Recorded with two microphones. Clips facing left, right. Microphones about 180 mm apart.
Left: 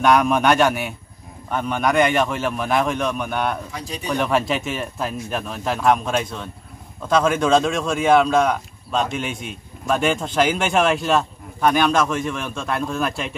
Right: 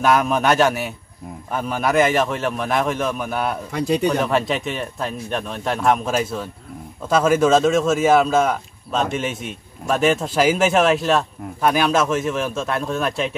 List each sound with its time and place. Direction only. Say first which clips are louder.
0.0 s speech: left 1 dB; centre (ahead or behind)
3.7 s speech: right 12 dB; 65° right (ahead or behind)
4.1 s speech: right 1 dB; centre (ahead or behind)